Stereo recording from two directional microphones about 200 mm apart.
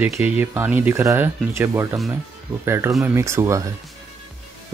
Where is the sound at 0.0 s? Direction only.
10° right (ahead or behind).